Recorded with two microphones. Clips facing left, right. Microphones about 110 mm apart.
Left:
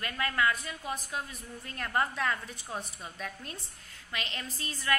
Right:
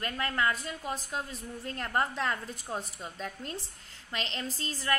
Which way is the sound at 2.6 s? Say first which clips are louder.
Right 2 dB; centre (ahead or behind).